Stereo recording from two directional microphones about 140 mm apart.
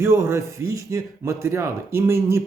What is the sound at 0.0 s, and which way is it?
A man's voice, 20° right (ahead or behind).